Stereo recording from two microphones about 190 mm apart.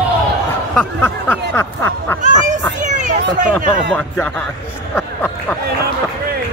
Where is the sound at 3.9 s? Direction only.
10° left (ahead or behind).